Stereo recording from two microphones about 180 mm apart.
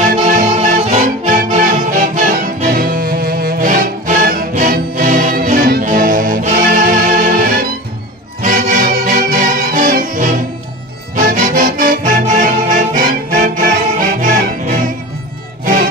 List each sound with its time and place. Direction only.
0.0 s music: 45° right (ahead or behind)